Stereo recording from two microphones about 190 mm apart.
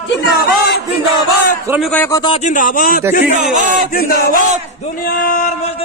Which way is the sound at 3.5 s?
40° right (ahead or behind).